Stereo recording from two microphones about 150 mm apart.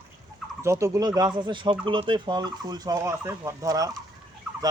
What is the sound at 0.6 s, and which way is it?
Speech, 20° right (ahead or behind).